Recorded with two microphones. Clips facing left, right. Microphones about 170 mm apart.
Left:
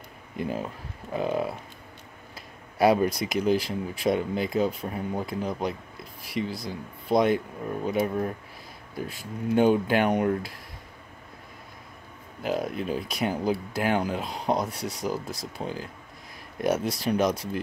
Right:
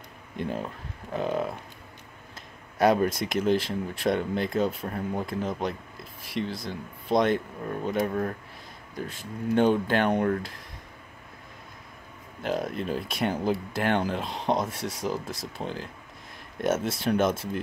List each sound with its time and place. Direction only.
0.4 s speech: 5° left (ahead or behind)
2.8 s speech: centre (ahead or behind)
9.6 s speech: 10° left (ahead or behind)
12.4 s speech: centre (ahead or behind)